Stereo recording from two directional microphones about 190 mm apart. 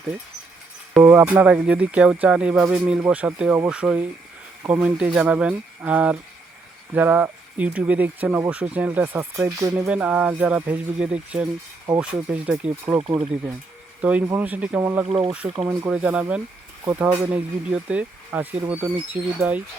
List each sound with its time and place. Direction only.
0.9 s speech: 10° right (ahead or behind)
13.0 s speech: 25° right (ahead or behind)
14.0 s speech: 5° right (ahead or behind)
15.0 s speech: 30° right (ahead or behind)
15.6 s speech: 10° right (ahead or behind)